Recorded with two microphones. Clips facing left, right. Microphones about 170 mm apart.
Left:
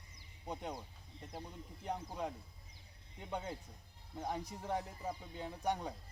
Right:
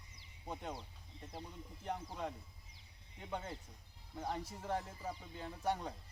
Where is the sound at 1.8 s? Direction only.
15° left (ahead or behind).